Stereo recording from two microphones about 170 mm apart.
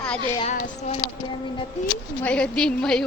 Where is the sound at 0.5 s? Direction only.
40° left (ahead or behind).